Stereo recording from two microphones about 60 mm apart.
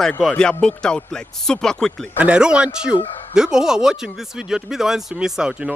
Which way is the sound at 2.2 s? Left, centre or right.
Centre.